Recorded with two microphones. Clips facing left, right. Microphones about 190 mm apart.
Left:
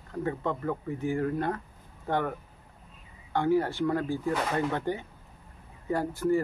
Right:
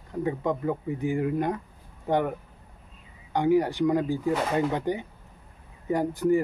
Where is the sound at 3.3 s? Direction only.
15° right (ahead or behind).